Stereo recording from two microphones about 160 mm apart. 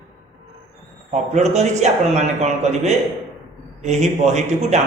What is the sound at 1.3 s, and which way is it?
A man's voice, 45° right (ahead or behind).